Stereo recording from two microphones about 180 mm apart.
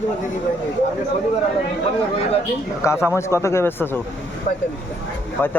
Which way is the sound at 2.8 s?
15° left (ahead or behind).